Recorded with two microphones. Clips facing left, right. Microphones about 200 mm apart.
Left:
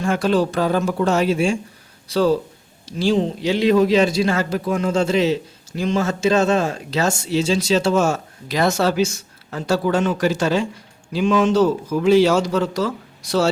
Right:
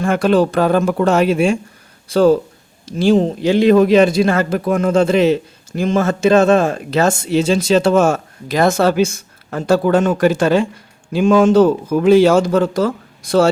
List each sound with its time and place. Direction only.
0.0 s a man's voice: 55° right (ahead or behind)